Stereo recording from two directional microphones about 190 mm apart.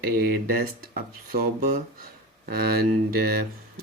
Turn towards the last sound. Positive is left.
turn(degrees=-55)  # may be behind; listen again after turning